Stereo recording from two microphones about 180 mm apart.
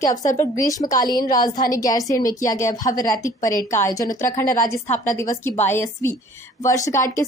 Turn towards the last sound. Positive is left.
turn(degrees=15)  # may be behind; listen again after turning